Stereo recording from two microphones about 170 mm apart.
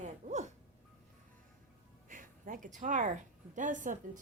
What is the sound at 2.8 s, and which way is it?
A woman's voice, 50° right (ahead or behind).